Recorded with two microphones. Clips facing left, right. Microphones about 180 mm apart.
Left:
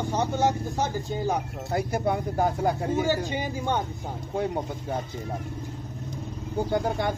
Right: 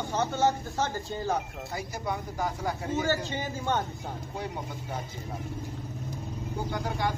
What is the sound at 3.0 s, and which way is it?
Speech, 15° left (ahead or behind).